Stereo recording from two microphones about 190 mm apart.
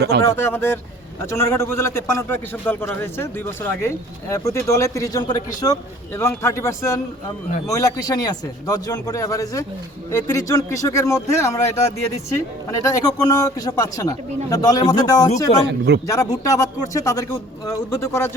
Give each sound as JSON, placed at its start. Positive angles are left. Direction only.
{"t": 0.3, "sound": "a man's voice", "side_deg": 10}